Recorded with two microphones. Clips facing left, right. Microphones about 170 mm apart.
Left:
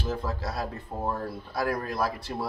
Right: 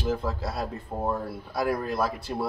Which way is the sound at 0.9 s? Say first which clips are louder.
Right 3 dB; 15° right (ahead or behind).